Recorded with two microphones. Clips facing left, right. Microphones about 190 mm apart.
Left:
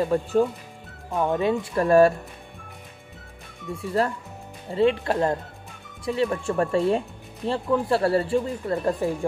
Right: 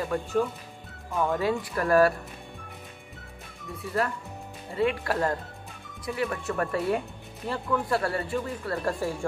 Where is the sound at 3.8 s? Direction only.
25° left (ahead or behind).